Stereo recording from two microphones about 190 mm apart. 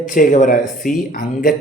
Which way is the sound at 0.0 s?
45° left (ahead or behind).